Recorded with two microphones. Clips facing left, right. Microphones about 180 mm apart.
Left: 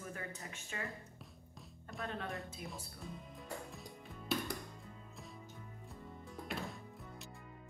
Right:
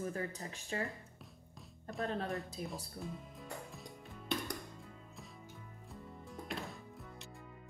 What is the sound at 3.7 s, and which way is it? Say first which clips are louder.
Music: even; centre (ahead or behind).